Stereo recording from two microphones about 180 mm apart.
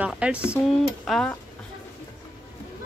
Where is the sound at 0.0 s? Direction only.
5° right (ahead or behind).